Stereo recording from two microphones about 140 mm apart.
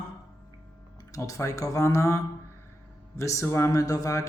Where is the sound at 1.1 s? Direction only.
20° left (ahead or behind).